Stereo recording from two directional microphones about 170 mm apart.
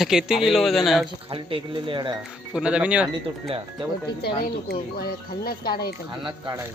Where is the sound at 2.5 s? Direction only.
5° right (ahead or behind).